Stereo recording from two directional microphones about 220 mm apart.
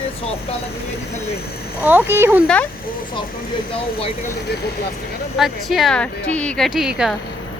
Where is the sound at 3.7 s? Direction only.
25° left (ahead or behind).